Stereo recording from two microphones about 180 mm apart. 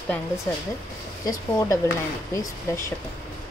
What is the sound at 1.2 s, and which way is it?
Speech, 20° left (ahead or behind).